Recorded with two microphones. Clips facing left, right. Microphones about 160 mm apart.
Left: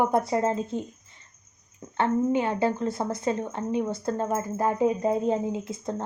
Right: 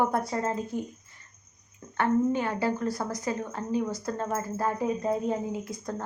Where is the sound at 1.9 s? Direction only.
20° left (ahead or behind).